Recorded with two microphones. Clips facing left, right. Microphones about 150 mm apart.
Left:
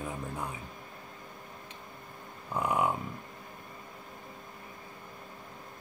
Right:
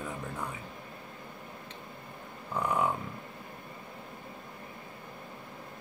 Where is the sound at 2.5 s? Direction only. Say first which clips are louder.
Left 1 dB; 10° left (ahead or behind).